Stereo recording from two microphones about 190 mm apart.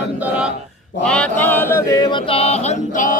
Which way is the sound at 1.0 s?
5° left (ahead or behind).